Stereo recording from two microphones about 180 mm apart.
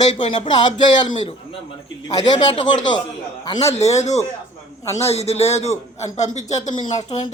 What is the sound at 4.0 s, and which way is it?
A man's voice, 40° left (ahead or behind).